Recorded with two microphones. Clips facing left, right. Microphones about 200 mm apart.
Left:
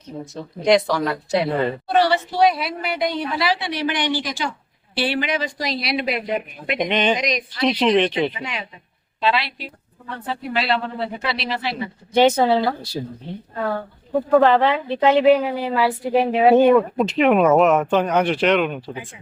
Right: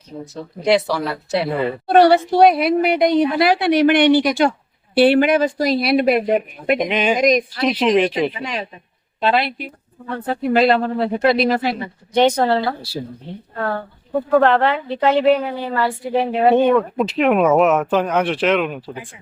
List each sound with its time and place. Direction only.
0.6 s speech: 5° right (ahead or behind)
1.9 s a woman's voice: 50° right (ahead or behind)
6.7 s speech: 5° right (ahead or behind)
7.2 s speech: 50° right (ahead or behind)
7.6 s speech: 5° right (ahead or behind)
8.4 s speech: 40° right (ahead or behind)
9.2 s speech: 50° right (ahead or behind)
12.1 s speech: 5° left (ahead or behind)
14.2 s speech: 5° left (ahead or behind)